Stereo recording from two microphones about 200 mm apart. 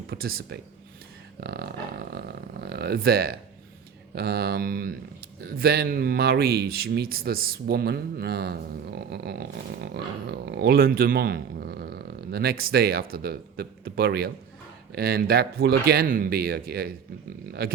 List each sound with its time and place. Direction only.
0.1 s speech: 50° right (ahead or behind)
2.1 s a sound: 55° right (ahead or behind)
4.1 s speech: 50° right (ahead or behind)